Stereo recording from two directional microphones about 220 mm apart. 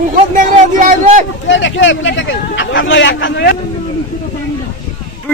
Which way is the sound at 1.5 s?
55° left (ahead or behind).